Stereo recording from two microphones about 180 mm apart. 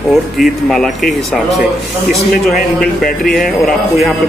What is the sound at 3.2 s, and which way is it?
Speech, centre (ahead or behind).